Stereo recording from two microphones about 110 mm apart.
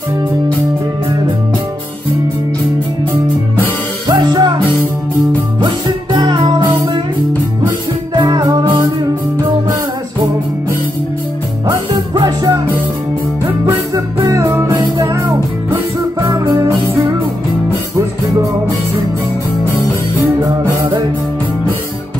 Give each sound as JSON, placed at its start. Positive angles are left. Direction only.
{"t": 4.1, "sound": "music", "side_deg": -40}
{"t": 6.1, "sound": "music", "side_deg": -40}
{"t": 8.1, "sound": "music", "side_deg": -40}
{"t": 11.9, "sound": "music", "side_deg": -40}
{"t": 13.9, "sound": "music", "side_deg": -30}